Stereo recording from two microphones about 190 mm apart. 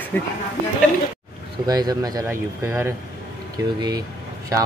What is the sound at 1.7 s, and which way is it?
Speech, 20° right (ahead or behind).